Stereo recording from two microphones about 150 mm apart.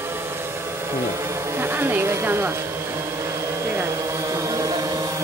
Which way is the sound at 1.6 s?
15° right (ahead or behind).